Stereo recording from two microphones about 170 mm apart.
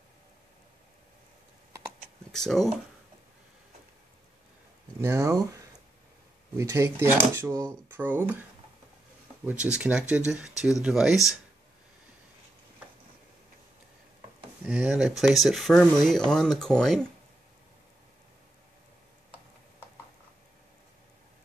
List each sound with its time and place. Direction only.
2.3 s speech: centre (ahead or behind)
5.0 s speech: 20° right (ahead or behind)
9.5 s speech: 10° right (ahead or behind)
14.6 s speech: 5° right (ahead or behind)